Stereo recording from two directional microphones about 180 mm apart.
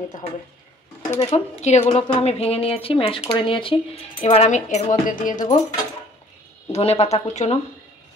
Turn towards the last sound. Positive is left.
turn(degrees=40)  # may be behind; listen again after turning